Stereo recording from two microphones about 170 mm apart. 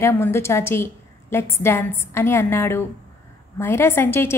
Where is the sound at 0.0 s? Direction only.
15° left (ahead or behind).